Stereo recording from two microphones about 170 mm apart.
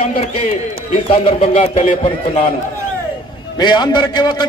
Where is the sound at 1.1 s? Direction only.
35° left (ahead or behind).